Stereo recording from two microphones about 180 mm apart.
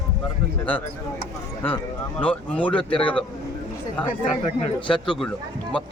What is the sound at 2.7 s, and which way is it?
Speech, 30° left (ahead or behind).